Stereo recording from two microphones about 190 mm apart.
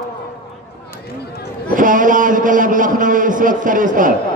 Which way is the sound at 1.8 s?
45° right (ahead or behind).